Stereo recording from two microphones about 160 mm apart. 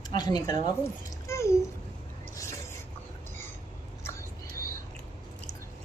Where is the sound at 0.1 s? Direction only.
25° left (ahead or behind).